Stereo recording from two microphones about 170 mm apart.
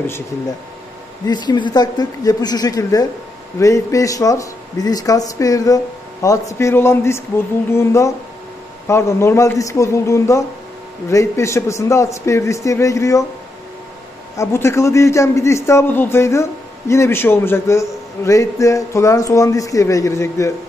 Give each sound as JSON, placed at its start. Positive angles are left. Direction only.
{"t": 1.2, "sound": "a man's voice", "side_deg": 25}
{"t": 14.3, "sound": "a man's voice", "side_deg": 15}